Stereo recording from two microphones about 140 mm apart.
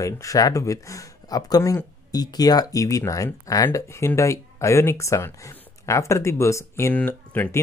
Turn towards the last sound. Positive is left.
turn(degrees=15)  # may be behind; listen again after turning